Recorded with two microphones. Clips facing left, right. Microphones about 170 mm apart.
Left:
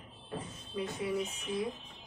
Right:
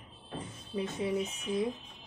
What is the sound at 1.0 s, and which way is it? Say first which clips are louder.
Speech: right 2 dB; 25° right (ahead or behind).